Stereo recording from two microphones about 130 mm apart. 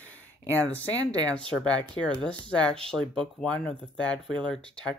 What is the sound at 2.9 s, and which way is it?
Speech, 5° left (ahead or behind).